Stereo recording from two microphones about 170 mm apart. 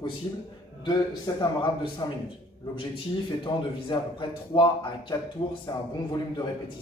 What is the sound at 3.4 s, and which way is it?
A man's voice, 30° left (ahead or behind).